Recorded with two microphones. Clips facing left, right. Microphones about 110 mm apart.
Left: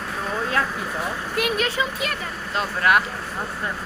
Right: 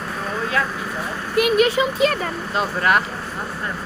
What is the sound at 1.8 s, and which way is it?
Speech, 25° right (ahead or behind).